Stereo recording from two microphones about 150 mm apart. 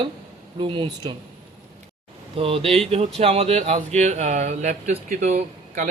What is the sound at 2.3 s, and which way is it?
Speech, 40° right (ahead or behind).